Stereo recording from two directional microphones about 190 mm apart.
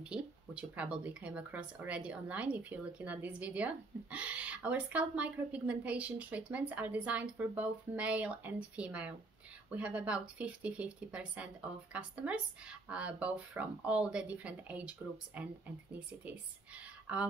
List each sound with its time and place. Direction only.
0.0 s speech: 5° right (ahead or behind)